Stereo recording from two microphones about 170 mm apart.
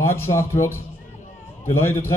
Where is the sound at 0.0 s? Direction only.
15° left (ahead or behind).